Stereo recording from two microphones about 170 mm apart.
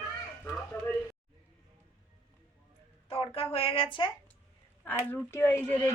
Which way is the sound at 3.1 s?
35° left (ahead or behind).